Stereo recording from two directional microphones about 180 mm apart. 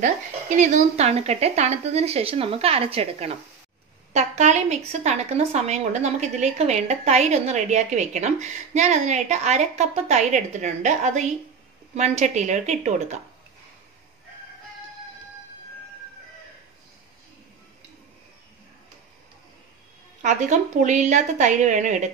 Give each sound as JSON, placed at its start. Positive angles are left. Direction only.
{"t": 0.0, "sound": "a woman's voice", "side_deg": -40}
{"t": 20.2, "sound": "a woman's voice", "side_deg": -40}